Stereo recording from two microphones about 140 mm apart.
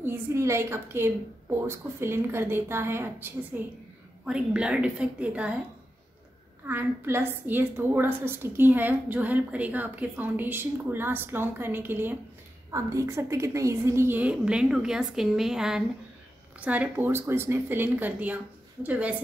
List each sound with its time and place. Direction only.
0.0 s a woman's voice: 20° right (ahead or behind)
6.7 s a woman's voice: 15° right (ahead or behind)